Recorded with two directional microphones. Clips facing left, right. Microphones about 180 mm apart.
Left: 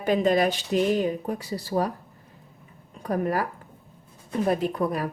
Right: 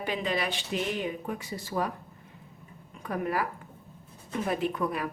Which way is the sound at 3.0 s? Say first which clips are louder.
Left 5 dB; 40° left (ahead or behind).